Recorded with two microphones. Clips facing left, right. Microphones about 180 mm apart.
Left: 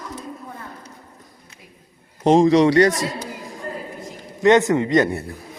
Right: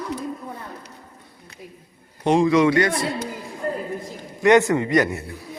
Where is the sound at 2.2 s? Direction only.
40° left (ahead or behind).